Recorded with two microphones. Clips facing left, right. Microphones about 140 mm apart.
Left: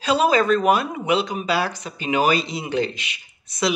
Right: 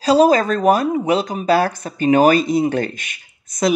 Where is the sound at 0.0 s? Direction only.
40° right (ahead or behind).